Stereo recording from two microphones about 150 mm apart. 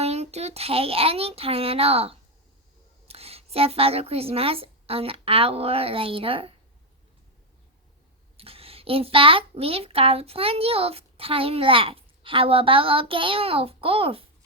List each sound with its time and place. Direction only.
0.0 s a child's voice: 45° right (ahead or behind)
8.4 s a child's voice: 40° right (ahead or behind)